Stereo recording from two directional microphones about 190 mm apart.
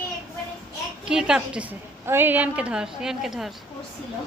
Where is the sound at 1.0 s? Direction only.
5° right (ahead or behind).